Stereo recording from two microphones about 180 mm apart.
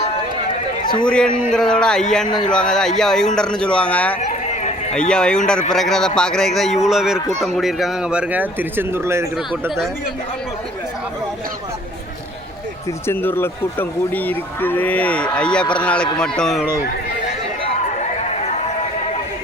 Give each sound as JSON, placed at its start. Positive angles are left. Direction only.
{"t": 1.0, "sound": "a man's voice", "side_deg": 5}
{"t": 4.2, "sound": "run", "side_deg": 40}
{"t": 4.9, "sound": "a man's voice", "side_deg": 5}
{"t": 13.1, "sound": "a man's voice", "side_deg": 10}